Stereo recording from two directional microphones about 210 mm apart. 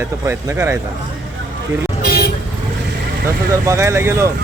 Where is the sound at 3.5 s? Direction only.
15° right (ahead or behind).